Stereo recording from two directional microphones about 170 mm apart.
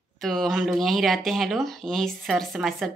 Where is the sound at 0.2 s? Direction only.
Centre (ahead or behind).